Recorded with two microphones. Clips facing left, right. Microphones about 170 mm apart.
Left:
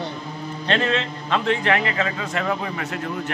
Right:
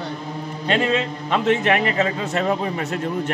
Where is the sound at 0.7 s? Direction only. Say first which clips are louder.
Right 2 dB; 10° right (ahead or behind); by 2.8 s 25° right (ahead or behind).